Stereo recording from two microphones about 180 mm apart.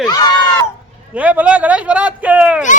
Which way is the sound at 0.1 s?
20° left (ahead or behind).